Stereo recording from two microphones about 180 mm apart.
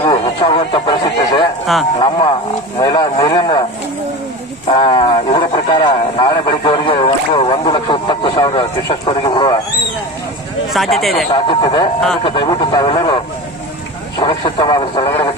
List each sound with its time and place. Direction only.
0.0 s a sound: 30° left (ahead or behind)
2.0 s speech: 25° left (ahead or behind)
4.6 s wild animals: 30° left (ahead or behind)
10.7 s speech: centre (ahead or behind)
11.3 s speech: 25° left (ahead or behind)